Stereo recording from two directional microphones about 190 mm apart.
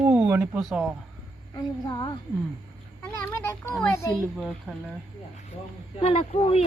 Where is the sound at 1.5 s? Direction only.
25° left (ahead or behind).